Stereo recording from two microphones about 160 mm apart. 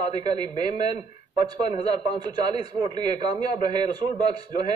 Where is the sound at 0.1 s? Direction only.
25° right (ahead or behind).